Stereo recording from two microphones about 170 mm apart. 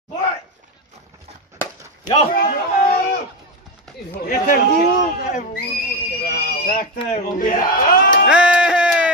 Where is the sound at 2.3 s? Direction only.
60° left (ahead or behind).